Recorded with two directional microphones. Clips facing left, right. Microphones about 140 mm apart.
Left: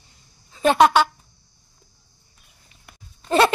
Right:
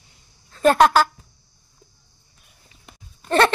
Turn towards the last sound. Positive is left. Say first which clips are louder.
# even
turn(degrees=10)  # may be behind; listen again after turning